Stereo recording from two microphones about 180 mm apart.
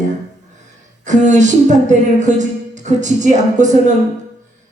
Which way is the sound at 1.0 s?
40° right (ahead or behind).